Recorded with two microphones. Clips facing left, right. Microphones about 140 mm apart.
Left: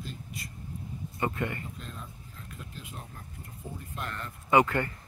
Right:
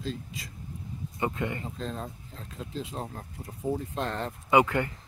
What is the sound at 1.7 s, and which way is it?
Speech, 90° right.